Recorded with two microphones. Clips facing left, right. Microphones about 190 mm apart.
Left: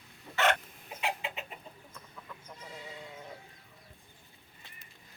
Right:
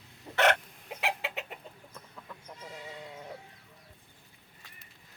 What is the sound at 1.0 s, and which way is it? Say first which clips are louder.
Chicken: right 1 dB; 75° right (ahead or behind).